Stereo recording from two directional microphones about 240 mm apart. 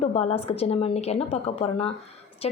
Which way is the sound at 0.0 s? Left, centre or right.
Left.